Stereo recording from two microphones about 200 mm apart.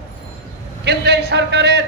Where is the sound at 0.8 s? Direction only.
55° right (ahead or behind).